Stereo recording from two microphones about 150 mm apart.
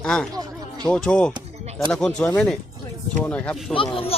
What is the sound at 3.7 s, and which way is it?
Speech, 40° left (ahead or behind).